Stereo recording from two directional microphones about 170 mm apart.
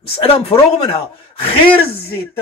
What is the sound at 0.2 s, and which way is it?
Speech, 35° left (ahead or behind).